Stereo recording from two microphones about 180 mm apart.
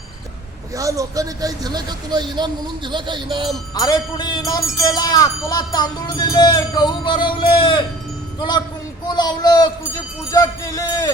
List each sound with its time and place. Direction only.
0.8 s speech: 20° right (ahead or behind)
3.8 s speech: 20° left (ahead or behind)